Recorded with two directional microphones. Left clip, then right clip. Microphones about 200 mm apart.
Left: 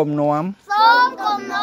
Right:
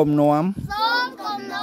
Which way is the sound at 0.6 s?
15° right (ahead or behind).